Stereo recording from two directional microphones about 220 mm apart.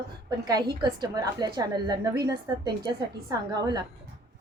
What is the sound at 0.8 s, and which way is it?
A woman's voice, 20° right (ahead or behind).